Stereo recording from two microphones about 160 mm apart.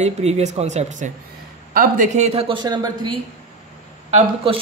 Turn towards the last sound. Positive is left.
turn(degrees=-35)  # may be behind; listen again after turning